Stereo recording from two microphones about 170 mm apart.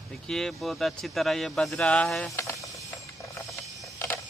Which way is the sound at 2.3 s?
20° left (ahead or behind).